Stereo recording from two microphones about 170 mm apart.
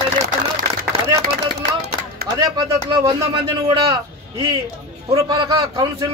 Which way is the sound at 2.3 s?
25° right (ahead or behind).